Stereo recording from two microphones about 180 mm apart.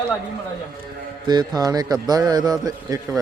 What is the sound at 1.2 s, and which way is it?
A man's voice, 25° right (ahead or behind).